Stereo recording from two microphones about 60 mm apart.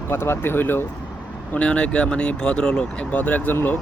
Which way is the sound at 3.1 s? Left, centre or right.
Left.